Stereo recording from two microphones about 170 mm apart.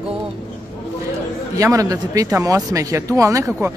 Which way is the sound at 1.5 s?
20° right (ahead or behind).